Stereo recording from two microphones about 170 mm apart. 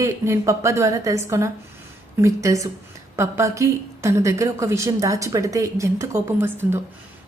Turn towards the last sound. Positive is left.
turn(degrees=-15)  # may be behind; listen again after turning